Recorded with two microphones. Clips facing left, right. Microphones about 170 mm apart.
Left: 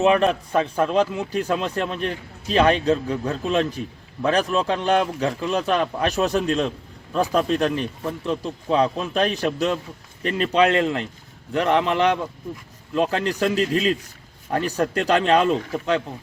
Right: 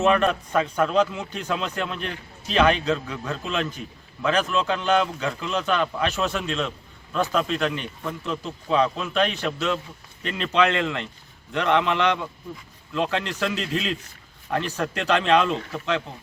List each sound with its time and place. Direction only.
0.2 s speech: 30° left (ahead or behind)
1.1 s speech: 10° left (ahead or behind)
1.6 s speech: 35° left (ahead or behind)